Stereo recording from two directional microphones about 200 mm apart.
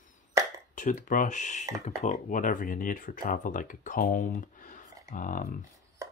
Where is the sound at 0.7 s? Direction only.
40° left (ahead or behind).